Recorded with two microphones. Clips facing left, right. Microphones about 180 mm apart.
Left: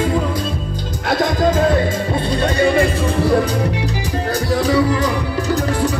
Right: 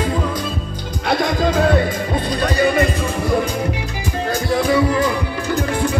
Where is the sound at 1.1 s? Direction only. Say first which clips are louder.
Left 2 dB; 20° left (ahead or behind).